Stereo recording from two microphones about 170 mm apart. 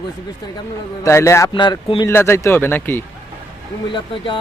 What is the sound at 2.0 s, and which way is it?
Speech, 15° left (ahead or behind).